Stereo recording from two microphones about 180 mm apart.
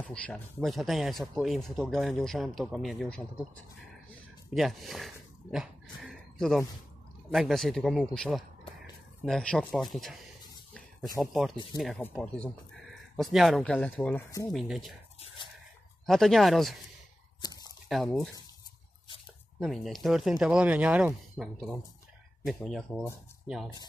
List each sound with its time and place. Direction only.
0.0 s speech: 5° left (ahead or behind)
4.6 s speech: centre (ahead or behind)
11.1 s speech: centre (ahead or behind)
16.1 s speech: centre (ahead or behind)
17.4 s squish: 20° left (ahead or behind)
17.8 s speech: centre (ahead or behind)
19.6 s speech: centre (ahead or behind)